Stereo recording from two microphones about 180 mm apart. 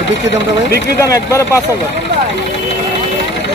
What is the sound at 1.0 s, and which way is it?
Speech, 15° left (ahead or behind).